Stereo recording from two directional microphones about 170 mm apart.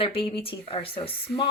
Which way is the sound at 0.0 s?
30° left (ahead or behind).